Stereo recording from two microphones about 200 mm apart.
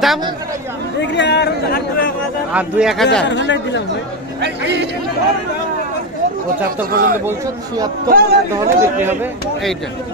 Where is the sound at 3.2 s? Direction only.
65° left (ahead or behind).